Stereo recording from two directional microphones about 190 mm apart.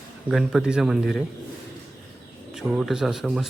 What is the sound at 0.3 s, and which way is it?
Speech, 5° right (ahead or behind).